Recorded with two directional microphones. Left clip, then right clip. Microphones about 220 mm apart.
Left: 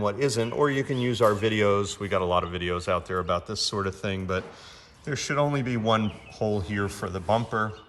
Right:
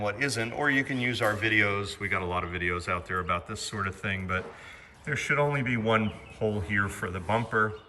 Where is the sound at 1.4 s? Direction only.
20° left (ahead or behind).